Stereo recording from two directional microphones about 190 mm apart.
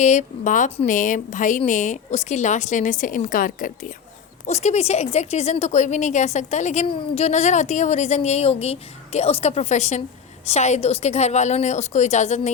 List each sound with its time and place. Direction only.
0.0 s a woman's voice: 40° left (ahead or behind)